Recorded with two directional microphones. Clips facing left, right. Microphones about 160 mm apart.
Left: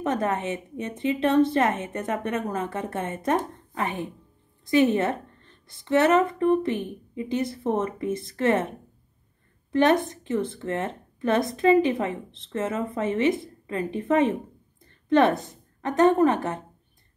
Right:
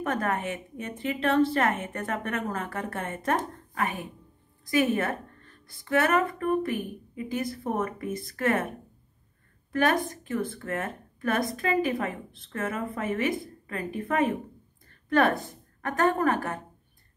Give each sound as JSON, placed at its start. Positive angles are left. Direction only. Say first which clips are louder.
{"t": 0.0, "sound": "speech", "louder": "left 3 dB", "side_deg": 20}
{"t": 9.7, "sound": "a woman's voice", "louder": "left 5 dB", "side_deg": 20}